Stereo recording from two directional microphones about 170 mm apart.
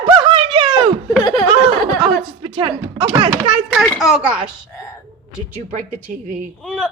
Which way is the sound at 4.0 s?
5° right (ahead or behind).